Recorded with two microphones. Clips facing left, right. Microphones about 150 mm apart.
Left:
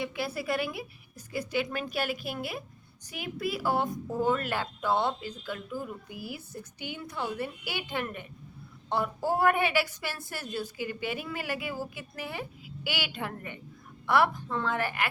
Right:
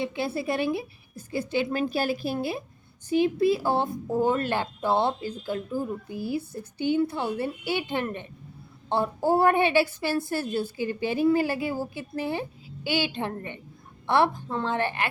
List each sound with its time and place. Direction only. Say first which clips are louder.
0.0 s a woman's voice: right 5 dB; 25° right (ahead or behind)